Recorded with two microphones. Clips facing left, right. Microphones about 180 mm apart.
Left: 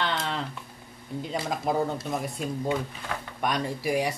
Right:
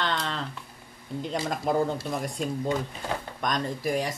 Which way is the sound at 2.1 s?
5° left (ahead or behind).